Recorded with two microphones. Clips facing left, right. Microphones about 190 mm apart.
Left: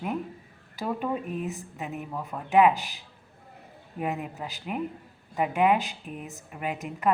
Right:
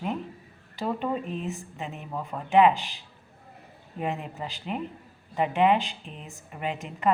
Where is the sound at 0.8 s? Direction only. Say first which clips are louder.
Right 1 dB; 5° left (ahead or behind).